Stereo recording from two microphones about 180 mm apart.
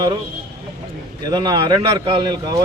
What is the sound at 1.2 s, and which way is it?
Speech, 25° right (ahead or behind).